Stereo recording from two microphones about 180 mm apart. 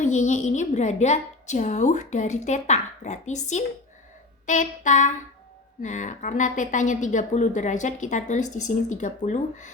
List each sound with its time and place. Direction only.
0.0 s a woman's voice: 40° left (ahead or behind)